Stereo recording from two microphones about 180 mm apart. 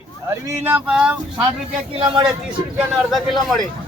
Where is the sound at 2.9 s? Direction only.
Centre (ahead or behind).